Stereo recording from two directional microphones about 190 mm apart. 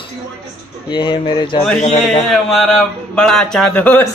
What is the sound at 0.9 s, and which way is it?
Speech, 25° left (ahead or behind).